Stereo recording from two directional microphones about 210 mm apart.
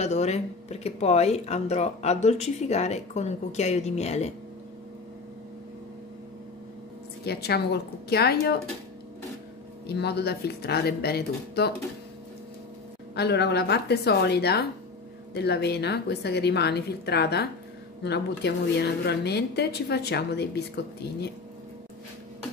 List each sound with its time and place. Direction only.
0.0 s speech: 30° left (ahead or behind)
7.2 s speech: 50° left (ahead or behind)
9.8 s speech: 50° left (ahead or behind)
13.1 s speech: 50° left (ahead or behind)